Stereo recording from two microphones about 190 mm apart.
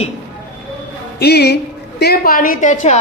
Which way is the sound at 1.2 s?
60° left (ahead or behind).